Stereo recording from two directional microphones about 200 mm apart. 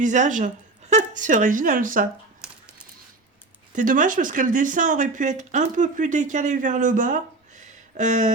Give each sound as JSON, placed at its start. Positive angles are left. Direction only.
{"t": 0.0, "sound": "a woman's voice", "side_deg": -40}
{"t": 2.4, "sound": "a sound", "side_deg": -5}
{"t": 3.8, "sound": "speech", "side_deg": -40}